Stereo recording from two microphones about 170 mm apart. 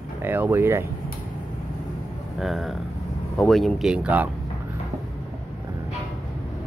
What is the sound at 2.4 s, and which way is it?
Speech, centre (ahead or behind).